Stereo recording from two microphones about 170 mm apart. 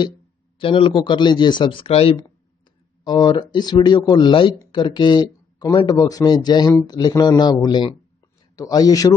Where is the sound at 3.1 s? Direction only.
25° left (ahead or behind).